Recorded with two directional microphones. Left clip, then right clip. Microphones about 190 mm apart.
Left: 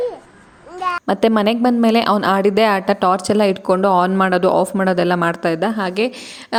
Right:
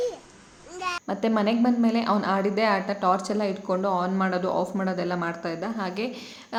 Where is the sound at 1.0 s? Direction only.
55° left (ahead or behind).